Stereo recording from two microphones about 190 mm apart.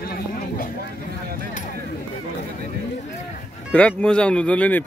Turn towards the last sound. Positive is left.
turn(degrees=10)  # may be behind; listen again after turning